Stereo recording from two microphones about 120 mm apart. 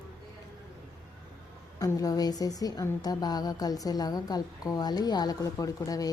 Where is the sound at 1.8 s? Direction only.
30° left (ahead or behind).